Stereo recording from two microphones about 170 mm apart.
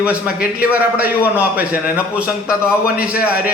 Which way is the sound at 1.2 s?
10° right (ahead or behind).